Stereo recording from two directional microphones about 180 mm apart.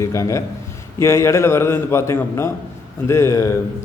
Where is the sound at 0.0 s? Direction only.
15° left (ahead or behind).